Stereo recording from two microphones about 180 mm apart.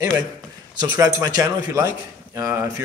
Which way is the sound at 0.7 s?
20° right (ahead or behind).